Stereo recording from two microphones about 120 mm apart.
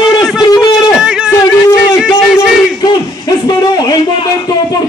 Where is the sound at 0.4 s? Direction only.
35° left (ahead or behind).